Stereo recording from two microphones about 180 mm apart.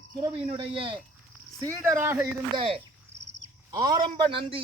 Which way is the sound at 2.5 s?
30° right (ahead or behind).